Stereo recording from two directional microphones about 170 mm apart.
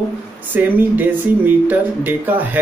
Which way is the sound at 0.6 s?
10° right (ahead or behind).